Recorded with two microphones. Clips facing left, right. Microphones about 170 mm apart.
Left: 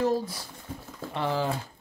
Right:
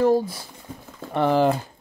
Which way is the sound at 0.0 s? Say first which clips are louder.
Right 7 dB; 55° right (ahead or behind).